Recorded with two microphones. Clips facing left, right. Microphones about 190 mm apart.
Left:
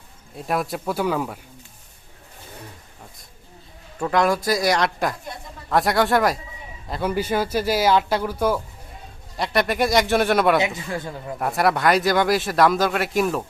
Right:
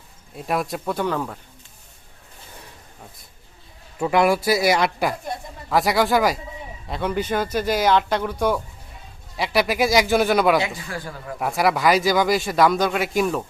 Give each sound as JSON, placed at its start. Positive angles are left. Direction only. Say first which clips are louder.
{"t": 0.3, "sound": "speech", "louder": "even", "side_deg": 0}
{"t": 3.9, "sound": "speech", "louder": "right 2 dB", "side_deg": -10}
{"t": 10.8, "sound": "speech", "louder": "left 3 dB", "side_deg": 20}
{"t": 11.3, "sound": "speech", "louder": "even", "side_deg": 0}